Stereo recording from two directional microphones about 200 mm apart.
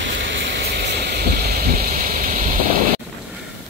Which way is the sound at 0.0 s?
65° right (ahead or behind).